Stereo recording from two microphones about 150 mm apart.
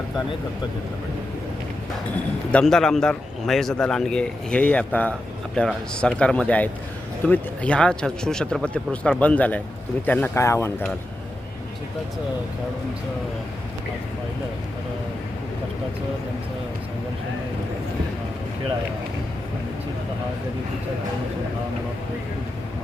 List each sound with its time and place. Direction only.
2.5 s a man's voice: 5° left (ahead or behind)